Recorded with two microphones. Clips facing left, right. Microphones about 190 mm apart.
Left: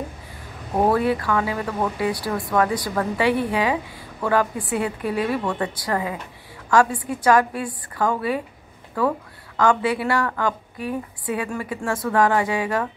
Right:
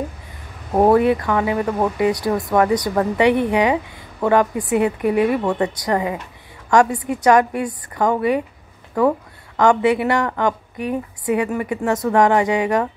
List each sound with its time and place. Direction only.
0.8 s a woman's voice: 20° right (ahead or behind)